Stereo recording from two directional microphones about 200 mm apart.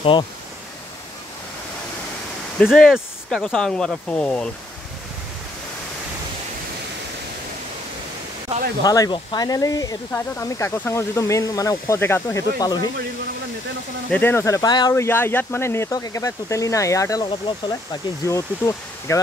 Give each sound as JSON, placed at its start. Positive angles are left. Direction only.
{"t": 2.6, "sound": "speech", "side_deg": 0}
{"t": 8.8, "sound": "speech", "side_deg": 20}
{"t": 14.1, "sound": "speech", "side_deg": 10}